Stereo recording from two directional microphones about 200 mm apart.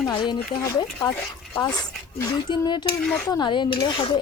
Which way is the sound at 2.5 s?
20° left (ahead or behind).